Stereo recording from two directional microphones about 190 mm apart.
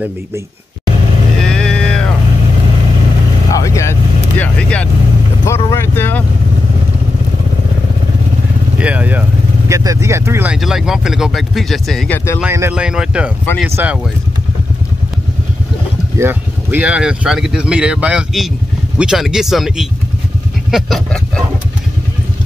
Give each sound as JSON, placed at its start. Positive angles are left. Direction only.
{"t": 1.4, "sound": "a sound", "side_deg": 5}
{"t": 3.5, "sound": "speech", "side_deg": 15}
{"t": 8.7, "sound": "speech", "side_deg": -5}
{"t": 12.4, "sound": "speech", "side_deg": -10}
{"t": 16.2, "sound": "speech", "side_deg": -10}